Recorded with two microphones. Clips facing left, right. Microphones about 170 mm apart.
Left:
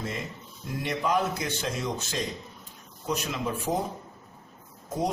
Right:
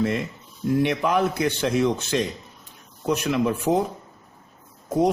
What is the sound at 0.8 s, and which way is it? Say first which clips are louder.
A man's voice: right 5 dB; 65° right (ahead or behind).